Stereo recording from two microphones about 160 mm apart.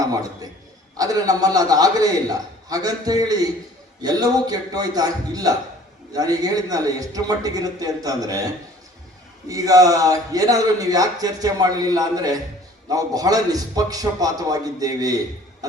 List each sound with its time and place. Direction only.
0.0 s a sound: 25° right (ahead or behind)
0.9 s a man's voice: 20° right (ahead or behind)
9.5 s a man's voice: 20° right (ahead or behind)